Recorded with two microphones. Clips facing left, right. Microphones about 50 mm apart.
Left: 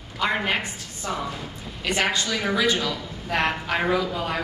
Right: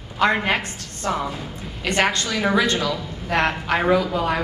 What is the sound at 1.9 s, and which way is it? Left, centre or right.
A woman's voice, right.